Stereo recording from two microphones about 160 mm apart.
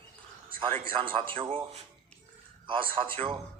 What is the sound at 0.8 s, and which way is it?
A man's voice, 35° right (ahead or behind).